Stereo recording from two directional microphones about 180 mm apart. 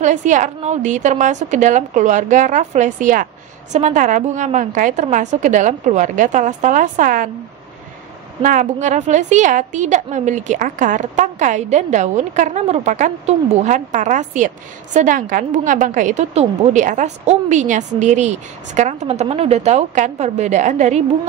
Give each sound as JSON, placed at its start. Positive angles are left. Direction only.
{"t": 0.0, "sound": "a woman's voice", "side_deg": -45}
{"t": 8.4, "sound": "a woman's voice", "side_deg": -45}